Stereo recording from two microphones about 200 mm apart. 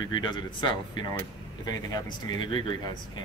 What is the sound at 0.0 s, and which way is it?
Speech, 20° left (ahead or behind).